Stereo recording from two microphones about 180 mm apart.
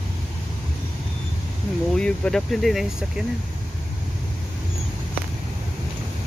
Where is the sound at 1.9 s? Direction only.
5° left (ahead or behind).